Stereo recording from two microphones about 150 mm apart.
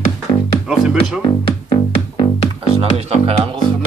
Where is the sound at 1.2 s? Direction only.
35° left (ahead or behind).